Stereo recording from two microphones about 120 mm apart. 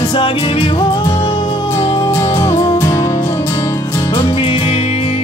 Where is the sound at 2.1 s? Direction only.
25° left (ahead or behind).